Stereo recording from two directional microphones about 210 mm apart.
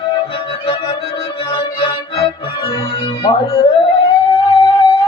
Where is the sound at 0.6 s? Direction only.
20° left (ahead or behind).